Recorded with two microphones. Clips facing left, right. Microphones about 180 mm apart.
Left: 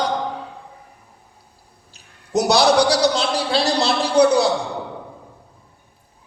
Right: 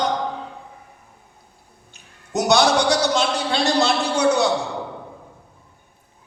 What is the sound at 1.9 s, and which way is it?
A man's voice, 35° left (ahead or behind).